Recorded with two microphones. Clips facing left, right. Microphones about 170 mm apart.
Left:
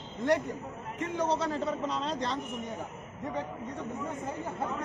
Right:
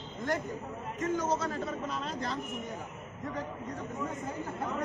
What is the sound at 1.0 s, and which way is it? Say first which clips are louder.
Speech: left 1 dB; 30° left (ahead or behind).